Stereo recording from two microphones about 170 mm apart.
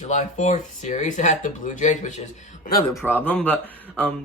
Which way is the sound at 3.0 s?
10° left (ahead or behind).